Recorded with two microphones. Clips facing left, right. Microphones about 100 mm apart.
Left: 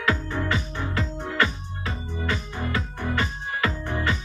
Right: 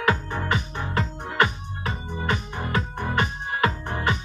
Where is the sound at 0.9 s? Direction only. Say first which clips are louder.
Right 3 dB; 20° right (ahead or behind).